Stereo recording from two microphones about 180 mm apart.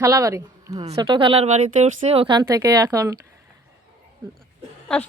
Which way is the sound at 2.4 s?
20° right (ahead or behind).